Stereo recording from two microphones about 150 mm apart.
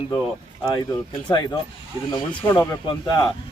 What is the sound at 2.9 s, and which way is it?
Speech, 30° left (ahead or behind).